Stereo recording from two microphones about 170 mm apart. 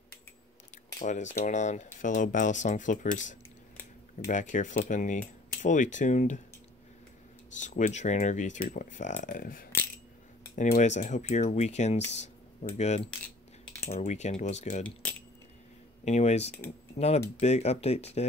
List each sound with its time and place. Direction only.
0.9 s speech: 45° left (ahead or behind)
4.3 s speech: 50° left (ahead or behind)
7.6 s speech: 50° left (ahead or behind)
15.0 s keys jangling: 10° left (ahead or behind)
16.1 s speech: 40° left (ahead or behind)